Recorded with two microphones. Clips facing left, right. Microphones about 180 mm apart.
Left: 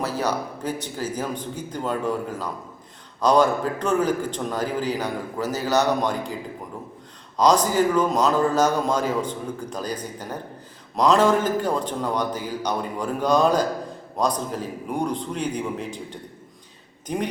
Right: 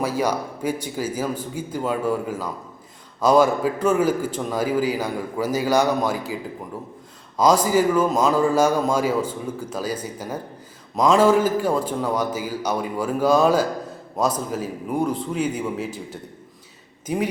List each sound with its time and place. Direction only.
0.0 s a man's voice: 10° right (ahead or behind)
7.3 s a man's voice: 10° right (ahead or behind)